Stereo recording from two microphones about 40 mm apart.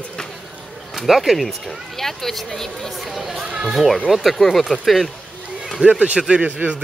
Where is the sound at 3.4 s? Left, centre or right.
Right.